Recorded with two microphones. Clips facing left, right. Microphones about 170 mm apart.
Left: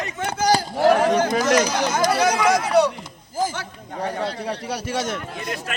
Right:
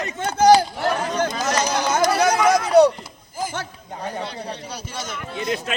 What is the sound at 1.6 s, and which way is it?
Speech, 55° right (ahead or behind).